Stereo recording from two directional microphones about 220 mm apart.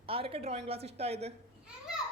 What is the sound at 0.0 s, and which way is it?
A woman's voice, 25° right (ahead or behind).